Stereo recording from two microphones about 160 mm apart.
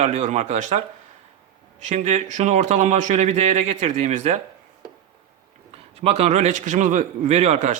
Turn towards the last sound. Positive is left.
turn(degrees=-45)  # may be behind; listen again after turning